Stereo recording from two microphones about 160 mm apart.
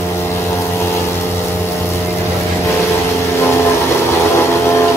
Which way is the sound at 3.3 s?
15° left (ahead or behind).